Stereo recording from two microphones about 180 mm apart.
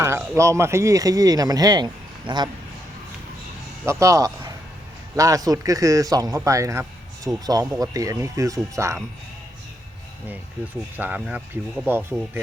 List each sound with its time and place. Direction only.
0.0 s speech: 15° right (ahead or behind)
3.8 s speech: 15° right (ahead or behind)
10.9 s speech: 10° right (ahead or behind)